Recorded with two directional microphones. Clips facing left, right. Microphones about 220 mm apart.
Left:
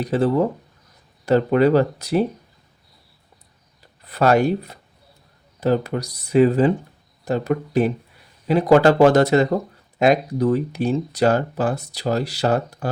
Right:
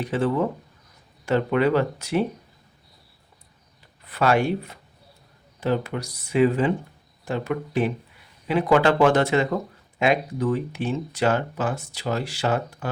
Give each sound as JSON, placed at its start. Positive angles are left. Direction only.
{"t": 0.0, "sound": "speech", "side_deg": 40}
{"t": 4.0, "sound": "speech", "side_deg": 40}